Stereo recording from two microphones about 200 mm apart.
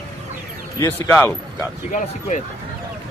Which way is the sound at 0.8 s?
10° left (ahead or behind).